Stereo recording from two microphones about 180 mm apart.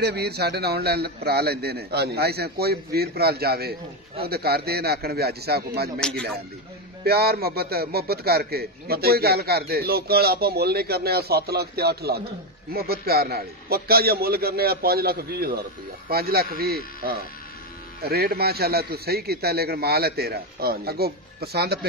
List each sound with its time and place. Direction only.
0.0 s a man's voice: 65° right (ahead or behind)
5.9 s speech: 5° left (ahead or behind)
7.1 s a man's voice: 60° right (ahead or behind)